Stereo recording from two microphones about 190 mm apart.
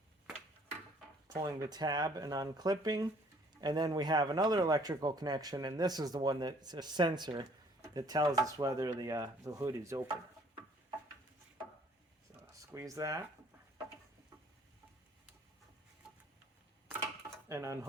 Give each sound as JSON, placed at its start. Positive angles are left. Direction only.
{"t": 1.3, "sound": "speech", "side_deg": -20}
{"t": 12.7, "sound": "speech", "side_deg": -15}
{"t": 17.5, "sound": "speech", "side_deg": -15}